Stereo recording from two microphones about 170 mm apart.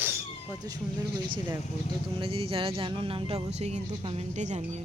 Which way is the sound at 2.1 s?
30° right (ahead or behind).